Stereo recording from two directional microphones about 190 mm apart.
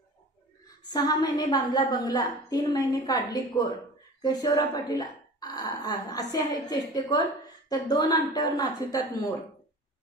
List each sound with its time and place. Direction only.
0.7 s a woman's voice: 20° left (ahead or behind)